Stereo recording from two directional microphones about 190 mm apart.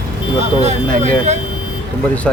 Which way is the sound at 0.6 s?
35° right (ahead or behind).